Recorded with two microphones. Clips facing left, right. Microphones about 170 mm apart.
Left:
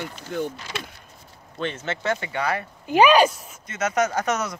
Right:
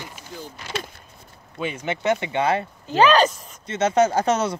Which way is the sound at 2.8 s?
15° left (ahead or behind).